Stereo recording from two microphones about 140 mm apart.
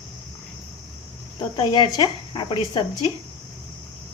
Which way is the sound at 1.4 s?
35° left (ahead or behind).